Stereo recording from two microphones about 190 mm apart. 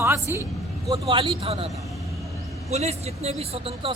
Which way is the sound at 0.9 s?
30° right (ahead or behind).